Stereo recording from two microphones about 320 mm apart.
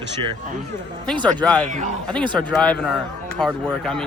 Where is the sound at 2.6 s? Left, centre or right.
Centre.